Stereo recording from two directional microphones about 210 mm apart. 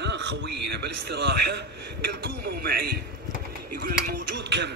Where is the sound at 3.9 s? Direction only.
50° right (ahead or behind).